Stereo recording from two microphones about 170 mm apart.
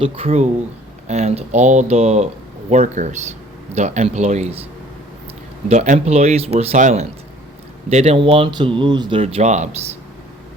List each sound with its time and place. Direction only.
0.0 s speech: 35° right (ahead or behind)
5.6 s speech: 45° right (ahead or behind)